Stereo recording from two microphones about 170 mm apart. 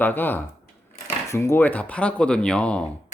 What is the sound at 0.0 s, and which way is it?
Speech, 10° left (ahead or behind).